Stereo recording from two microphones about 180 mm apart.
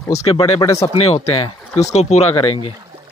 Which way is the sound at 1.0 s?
35° left (ahead or behind).